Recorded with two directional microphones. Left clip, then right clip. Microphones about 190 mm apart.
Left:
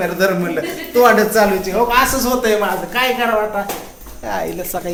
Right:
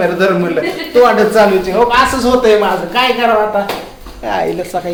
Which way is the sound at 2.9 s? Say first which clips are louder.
Right 5 dB; 5° left (ahead or behind).